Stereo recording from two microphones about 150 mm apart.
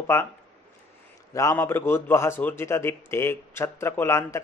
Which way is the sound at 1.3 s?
20° left (ahead or behind).